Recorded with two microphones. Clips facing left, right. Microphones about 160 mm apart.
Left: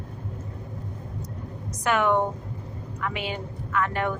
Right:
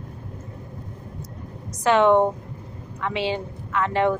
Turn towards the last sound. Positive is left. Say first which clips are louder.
# right 5 dB
turn(degrees=-25)  # may be behind; listen again after turning